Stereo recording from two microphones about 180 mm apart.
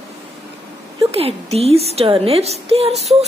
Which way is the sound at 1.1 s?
35° right (ahead or behind).